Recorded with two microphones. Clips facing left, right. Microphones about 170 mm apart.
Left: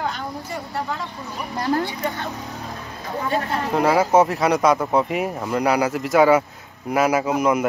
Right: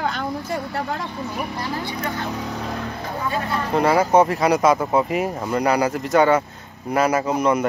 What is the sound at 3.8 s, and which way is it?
Speech, 5° left (ahead or behind).